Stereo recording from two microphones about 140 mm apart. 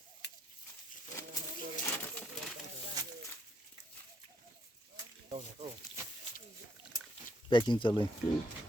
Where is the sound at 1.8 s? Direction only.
10° left (ahead or behind).